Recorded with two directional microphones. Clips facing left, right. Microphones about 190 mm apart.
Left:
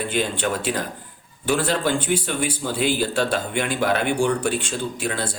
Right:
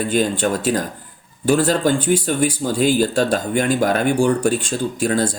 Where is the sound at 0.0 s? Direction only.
40° right (ahead or behind).